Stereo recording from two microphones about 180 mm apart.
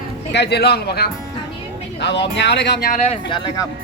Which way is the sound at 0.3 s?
70° left (ahead or behind).